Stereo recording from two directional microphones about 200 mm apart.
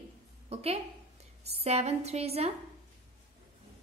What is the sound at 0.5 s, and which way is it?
A woman's voice, 30° right (ahead or behind).